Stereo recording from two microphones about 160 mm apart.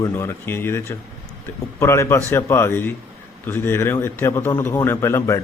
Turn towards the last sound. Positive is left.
turn(degrees=15)  # may be behind; listen again after turning